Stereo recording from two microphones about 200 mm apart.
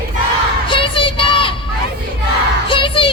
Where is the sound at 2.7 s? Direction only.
25° left (ahead or behind).